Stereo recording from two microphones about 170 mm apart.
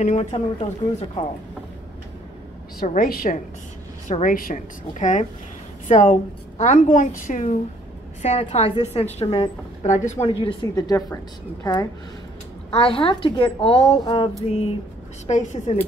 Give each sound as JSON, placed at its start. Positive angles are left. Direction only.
{"t": 0.0, "sound": "a woman's voice", "side_deg": 40}
{"t": 2.9, "sound": "a woman's voice", "side_deg": 55}
{"t": 9.8, "sound": "a woman's voice", "side_deg": 45}
{"t": 12.7, "sound": "a woman's voice", "side_deg": 30}
{"t": 15.2, "sound": "a woman's voice", "side_deg": 45}